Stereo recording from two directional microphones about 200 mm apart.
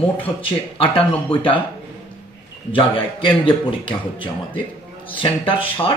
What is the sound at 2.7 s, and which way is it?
A man's voice, 25° left (ahead or behind).